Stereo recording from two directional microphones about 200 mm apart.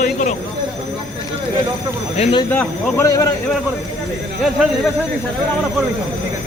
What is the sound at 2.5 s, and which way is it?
Speech, 10° left (ahead or behind).